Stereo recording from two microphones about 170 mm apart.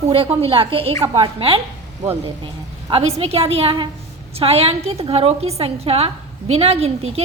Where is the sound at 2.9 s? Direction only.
35° right (ahead or behind).